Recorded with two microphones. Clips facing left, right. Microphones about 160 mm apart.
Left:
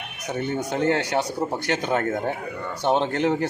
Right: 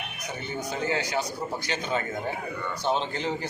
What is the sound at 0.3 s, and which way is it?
A man's voice, 65° left (ahead or behind).